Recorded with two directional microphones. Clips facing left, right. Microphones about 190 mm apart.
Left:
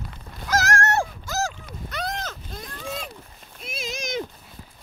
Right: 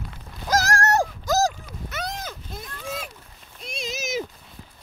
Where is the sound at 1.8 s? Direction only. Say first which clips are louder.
Left 1 dB; 5° right (ahead or behind).